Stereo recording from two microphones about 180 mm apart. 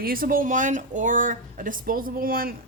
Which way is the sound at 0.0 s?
55° right (ahead or behind).